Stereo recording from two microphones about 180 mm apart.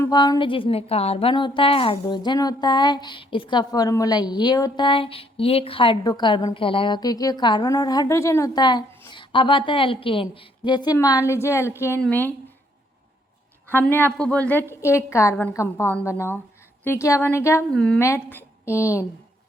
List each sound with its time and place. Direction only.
0.0 s a woman's voice: 20° left (ahead or behind)
13.7 s a woman's voice: 10° left (ahead or behind)
17.7 s a woman's voice: 5° left (ahead or behind)
18.3 s a woman's voice: 15° left (ahead or behind)